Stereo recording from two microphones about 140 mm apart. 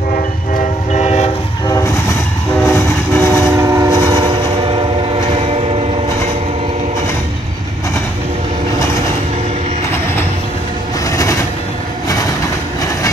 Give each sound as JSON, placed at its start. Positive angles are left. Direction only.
{"t": 0.1, "sound": "train", "side_deg": 65}
{"t": 1.7, "sound": "train", "side_deg": 20}
{"t": 3.5, "sound": "train", "side_deg": -20}
{"t": 11.1, "sound": "train", "side_deg": 20}